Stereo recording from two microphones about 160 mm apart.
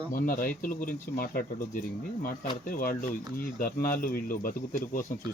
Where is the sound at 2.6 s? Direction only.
60° left (ahead or behind).